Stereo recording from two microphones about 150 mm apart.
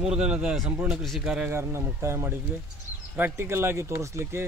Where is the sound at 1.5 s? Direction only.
20° right (ahead or behind).